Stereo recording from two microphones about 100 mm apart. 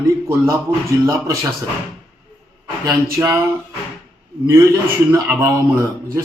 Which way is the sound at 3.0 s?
25° right (ahead or behind).